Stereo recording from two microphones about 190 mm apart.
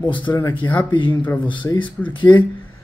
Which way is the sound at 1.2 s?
10° left (ahead or behind).